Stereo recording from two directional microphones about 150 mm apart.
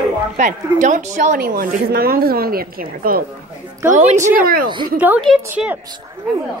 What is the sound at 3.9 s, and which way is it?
Speech, 50° right (ahead or behind).